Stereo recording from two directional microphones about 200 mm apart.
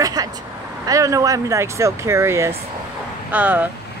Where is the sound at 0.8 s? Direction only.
15° right (ahead or behind).